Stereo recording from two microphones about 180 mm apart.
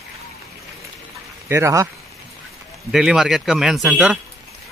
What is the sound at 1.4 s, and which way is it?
Speech, 15° right (ahead or behind).